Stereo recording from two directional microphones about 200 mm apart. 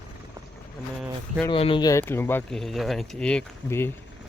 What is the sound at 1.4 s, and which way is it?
Speech, 25° left (ahead or behind).